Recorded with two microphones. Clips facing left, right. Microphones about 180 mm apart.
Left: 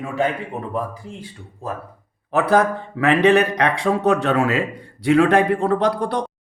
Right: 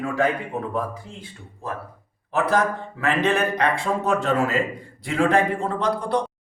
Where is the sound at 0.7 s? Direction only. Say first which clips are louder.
Left 1 dB; 35° left (ahead or behind).